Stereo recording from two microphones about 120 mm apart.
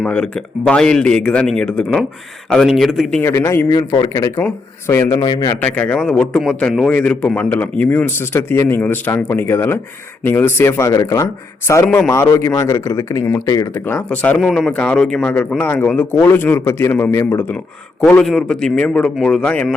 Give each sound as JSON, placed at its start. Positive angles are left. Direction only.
{"t": 0.0, "sound": "speech", "side_deg": 5}
{"t": 3.2, "sound": "a man's voice", "side_deg": 20}
{"t": 3.8, "sound": "a man's voice", "side_deg": 35}
{"t": 5.1, "sound": "speech", "side_deg": 40}
{"t": 5.5, "sound": "a man's voice", "side_deg": 10}
{"t": 11.9, "sound": "speech", "side_deg": 10}
{"t": 12.1, "sound": "a man's voice", "side_deg": 20}
{"t": 14.3, "sound": "a man's voice", "side_deg": 0}
{"t": 18.0, "sound": "speech", "side_deg": 5}